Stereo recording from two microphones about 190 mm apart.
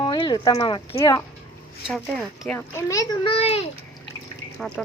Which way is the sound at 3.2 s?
30° left (ahead or behind).